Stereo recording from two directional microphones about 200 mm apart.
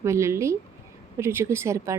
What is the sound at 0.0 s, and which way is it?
A woman's voice, 15° right (ahead or behind).